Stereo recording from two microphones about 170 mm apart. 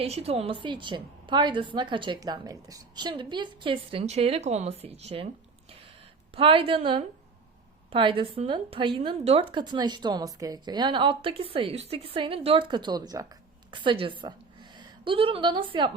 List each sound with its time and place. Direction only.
0.0 s a woman's voice: 35° right (ahead or behind)
6.3 s a woman's voice: 30° right (ahead or behind)